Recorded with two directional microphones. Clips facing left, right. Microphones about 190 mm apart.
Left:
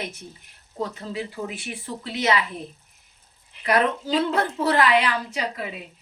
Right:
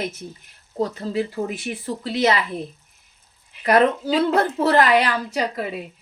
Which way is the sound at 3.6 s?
40° right (ahead or behind).